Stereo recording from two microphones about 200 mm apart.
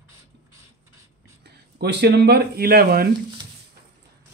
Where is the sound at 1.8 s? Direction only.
55° right (ahead or behind).